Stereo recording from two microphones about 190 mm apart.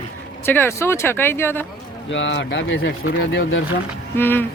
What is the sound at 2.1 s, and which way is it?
Speech, 75° left (ahead or behind).